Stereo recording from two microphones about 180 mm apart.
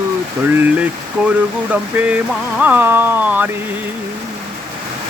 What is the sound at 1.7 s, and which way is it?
Speech, 5° right (ahead or behind).